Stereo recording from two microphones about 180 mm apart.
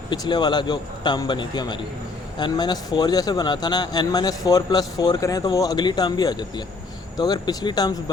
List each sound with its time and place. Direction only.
0.1 s speech: 25° left (ahead or behind)